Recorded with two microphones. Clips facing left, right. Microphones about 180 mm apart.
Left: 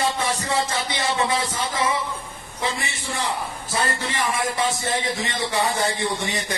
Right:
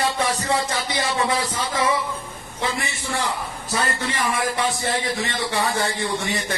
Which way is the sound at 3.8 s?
25° left (ahead or behind).